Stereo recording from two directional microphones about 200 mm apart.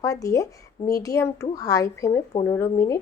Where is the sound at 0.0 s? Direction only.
15° left (ahead or behind).